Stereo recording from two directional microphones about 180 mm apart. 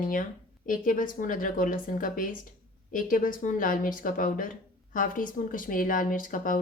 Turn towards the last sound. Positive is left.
turn(degrees=50)  # may be behind; listen again after turning